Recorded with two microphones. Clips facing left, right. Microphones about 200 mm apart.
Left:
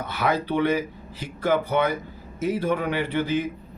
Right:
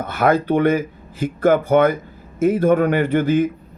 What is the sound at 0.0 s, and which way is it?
Speech, 50° right (ahead or behind).